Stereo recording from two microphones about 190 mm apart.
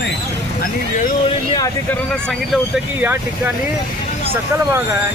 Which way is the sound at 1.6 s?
20° left (ahead or behind).